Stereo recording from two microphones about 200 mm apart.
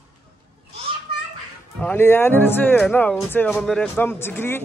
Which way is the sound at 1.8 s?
10° left (ahead or behind).